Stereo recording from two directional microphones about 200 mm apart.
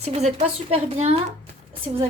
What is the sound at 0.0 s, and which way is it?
A woman's voice, 30° right (ahead or behind).